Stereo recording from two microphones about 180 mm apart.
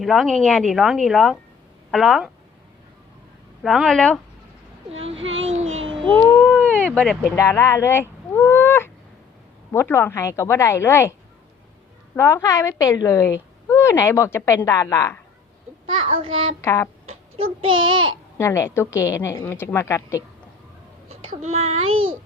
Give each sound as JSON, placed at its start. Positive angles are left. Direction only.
{"t": 0.0, "sound": "a woman's voice", "side_deg": 0}
{"t": 3.6, "sound": "a woman's voice", "side_deg": 0}
{"t": 5.1, "sound": "speech", "side_deg": -90}
{"t": 5.5, "sound": "a sound", "side_deg": -35}
{"t": 6.1, "sound": "a sound", "side_deg": 10}
{"t": 6.9, "sound": "a woman's voice", "side_deg": 5}
{"t": 12.1, "sound": "a woman's voice", "side_deg": 15}
{"t": 16.0, "sound": "a child's voice", "side_deg": -30}
{"t": 16.6, "sound": "a woman's voice", "side_deg": 15}
{"t": 17.3, "sound": "a child's voice", "side_deg": -30}
{"t": 18.3, "sound": "a woman's voice", "side_deg": 15}
{"t": 21.1, "sound": "a child's voice", "side_deg": -35}